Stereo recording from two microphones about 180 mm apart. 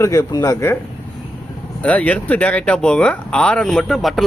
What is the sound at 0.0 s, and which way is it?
Speech, 20° left (ahead or behind).